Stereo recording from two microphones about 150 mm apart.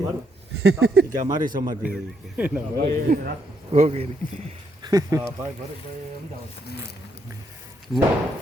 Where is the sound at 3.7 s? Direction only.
50° right (ahead or behind).